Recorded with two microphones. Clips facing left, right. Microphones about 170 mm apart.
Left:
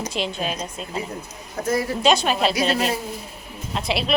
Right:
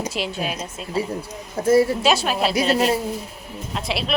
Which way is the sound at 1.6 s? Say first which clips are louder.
Right 7 dB; 30° right (ahead or behind).